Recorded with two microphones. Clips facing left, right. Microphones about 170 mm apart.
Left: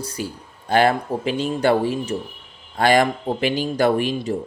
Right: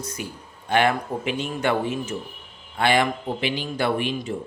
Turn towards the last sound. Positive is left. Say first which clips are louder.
# left 5 dB
turn(degrees=40)  # may be behind; listen again after turning